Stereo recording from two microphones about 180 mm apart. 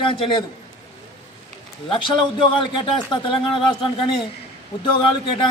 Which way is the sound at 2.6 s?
25° left (ahead or behind).